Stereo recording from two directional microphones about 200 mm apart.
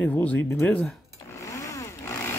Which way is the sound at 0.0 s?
10° left (ahead or behind).